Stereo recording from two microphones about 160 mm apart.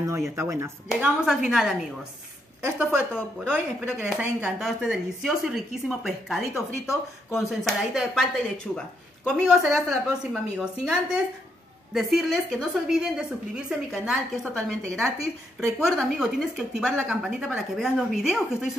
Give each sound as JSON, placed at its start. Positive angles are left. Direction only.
{"t": 0.0, "sound": "speech", "side_deg": -15}
{"t": 0.8, "sound": "speech", "side_deg": -5}
{"t": 6.5, "sound": "speech", "side_deg": 15}
{"t": 7.3, "sound": "speech", "side_deg": 0}
{"t": 15.8, "sound": "speech", "side_deg": -5}